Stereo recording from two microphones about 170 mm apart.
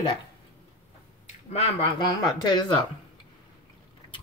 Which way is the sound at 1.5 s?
30° left (ahead or behind).